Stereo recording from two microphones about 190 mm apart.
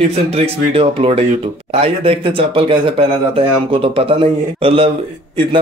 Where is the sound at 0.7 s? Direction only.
30° right (ahead or behind).